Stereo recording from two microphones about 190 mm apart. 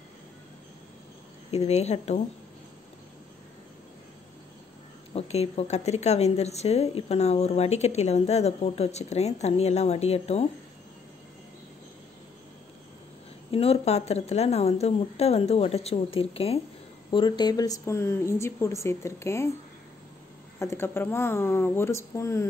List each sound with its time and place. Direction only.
1.5 s speech: 35° left (ahead or behind)
5.1 s speech: 35° left (ahead or behind)
13.5 s a woman's voice: 30° left (ahead or behind); by 19.5 s 15° left (ahead or behind)
20.5 s a woman's voice: 15° left (ahead or behind)